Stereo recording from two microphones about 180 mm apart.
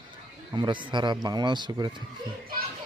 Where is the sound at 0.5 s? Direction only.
25° right (ahead or behind).